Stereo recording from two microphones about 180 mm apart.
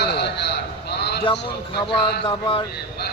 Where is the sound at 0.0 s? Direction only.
70° left (ahead or behind).